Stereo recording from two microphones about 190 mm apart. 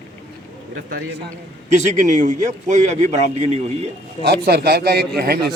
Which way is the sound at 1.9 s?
40° right (ahead or behind).